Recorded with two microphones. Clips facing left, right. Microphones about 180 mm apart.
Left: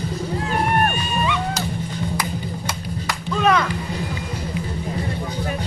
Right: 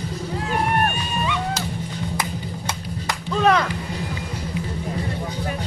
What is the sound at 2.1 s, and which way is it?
Music, 25° right (ahead or behind).